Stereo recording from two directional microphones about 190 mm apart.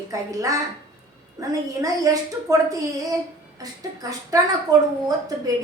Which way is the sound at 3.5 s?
20° right (ahead or behind).